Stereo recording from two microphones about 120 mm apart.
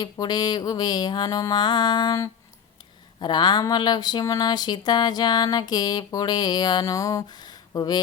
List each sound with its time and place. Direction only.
0.0 s speech: 35° left (ahead or behind)